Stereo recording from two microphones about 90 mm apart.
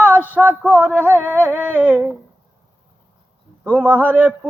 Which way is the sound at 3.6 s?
20° right (ahead or behind).